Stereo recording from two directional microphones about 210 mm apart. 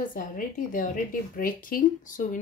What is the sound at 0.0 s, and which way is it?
Speech, 40° left (ahead or behind).